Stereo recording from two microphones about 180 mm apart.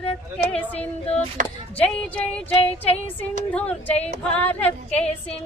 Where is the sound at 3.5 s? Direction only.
5° left (ahead or behind).